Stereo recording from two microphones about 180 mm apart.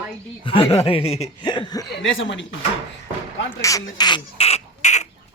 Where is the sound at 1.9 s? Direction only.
80° left.